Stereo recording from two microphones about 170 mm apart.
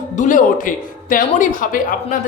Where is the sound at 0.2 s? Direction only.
50° left (ahead or behind).